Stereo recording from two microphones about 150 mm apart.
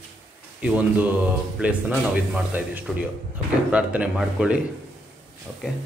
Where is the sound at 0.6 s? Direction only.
10° right (ahead or behind).